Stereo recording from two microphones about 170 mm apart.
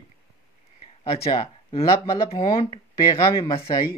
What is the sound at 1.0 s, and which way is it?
Speech, 30° left (ahead or behind).